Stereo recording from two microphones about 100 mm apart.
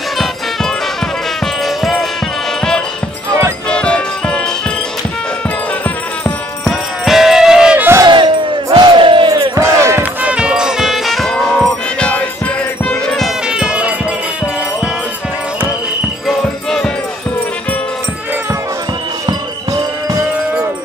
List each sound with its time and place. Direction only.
1.8 s music: centre (ahead or behind)
3.7 s music: 10° left (ahead or behind)
7.1 s music: 5° right (ahead or behind)
8.0 s battle cry: 50° right (ahead or behind)
9.6 s basketball bounce: 30° right (ahead or behind)
10.2 s music: 10° right (ahead or behind)
13.5 s music: 10° right (ahead or behind)
16.3 s music: 5° left (ahead or behind)
19.2 s music: 35° right (ahead or behind)